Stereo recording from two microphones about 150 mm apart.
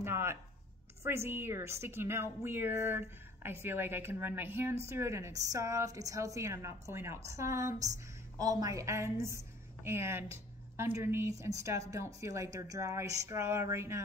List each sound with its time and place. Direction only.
0.0 s a woman's voice: 15° right (ahead or behind)